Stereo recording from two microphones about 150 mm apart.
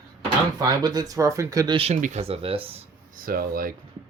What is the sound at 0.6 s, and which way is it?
Speech, 25° right (ahead or behind).